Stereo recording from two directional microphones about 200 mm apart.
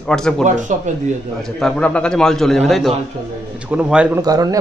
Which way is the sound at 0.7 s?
35° right (ahead or behind).